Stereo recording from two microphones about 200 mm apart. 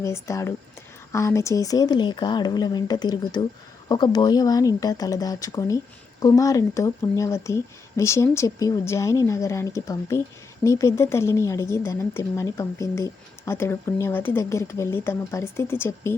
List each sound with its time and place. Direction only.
0.0 s speech: 15° left (ahead or behind)